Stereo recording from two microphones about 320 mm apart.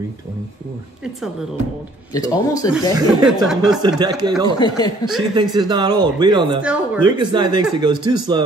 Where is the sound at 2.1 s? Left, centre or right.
Centre.